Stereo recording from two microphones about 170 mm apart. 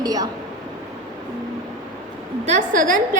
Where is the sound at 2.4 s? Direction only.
45° right (ahead or behind).